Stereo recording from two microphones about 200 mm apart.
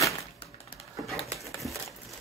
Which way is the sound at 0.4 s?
30° left (ahead or behind).